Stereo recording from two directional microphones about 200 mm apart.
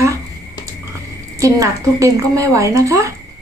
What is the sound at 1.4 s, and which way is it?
A woman's voice, 15° right (ahead or behind).